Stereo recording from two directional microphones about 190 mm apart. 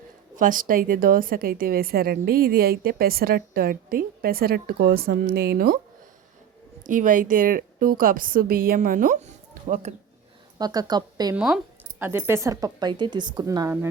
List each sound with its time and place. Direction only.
0.3 s a woman's voice: 45° right (ahead or behind)
6.8 s a woman's voice: 45° right (ahead or behind)
10.6 s speech: 20° right (ahead or behind)
11.3 s speech: 5° right (ahead or behind)